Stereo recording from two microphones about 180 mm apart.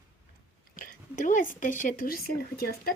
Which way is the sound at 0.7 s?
50° left (ahead or behind).